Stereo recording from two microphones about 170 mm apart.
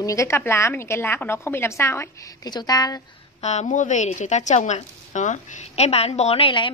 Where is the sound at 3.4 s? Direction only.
40° left (ahead or behind).